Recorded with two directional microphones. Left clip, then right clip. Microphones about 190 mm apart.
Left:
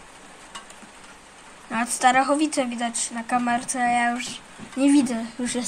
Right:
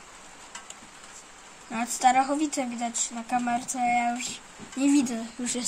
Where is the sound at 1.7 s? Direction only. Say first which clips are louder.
Left 3 dB; 5° right (ahead or behind).